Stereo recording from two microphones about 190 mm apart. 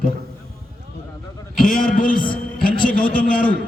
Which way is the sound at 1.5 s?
45° left (ahead or behind).